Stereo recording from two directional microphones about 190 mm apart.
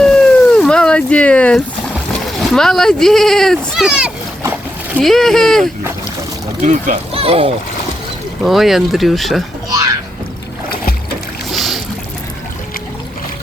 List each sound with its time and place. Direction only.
0.0 s cat: 5° left (ahead or behind)
2.1 s speech: centre (ahead or behind)
6.6 s speech: 40° right (ahead or behind)
8.4 s speech: centre (ahead or behind)
11.5 s boat: centre (ahead or behind)